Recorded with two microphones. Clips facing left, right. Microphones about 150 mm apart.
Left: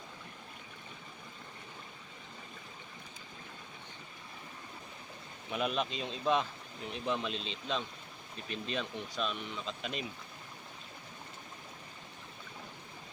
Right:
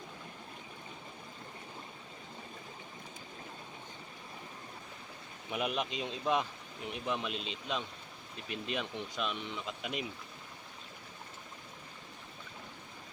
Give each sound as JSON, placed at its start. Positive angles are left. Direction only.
{"t": 5.5, "sound": "speech", "side_deg": -15}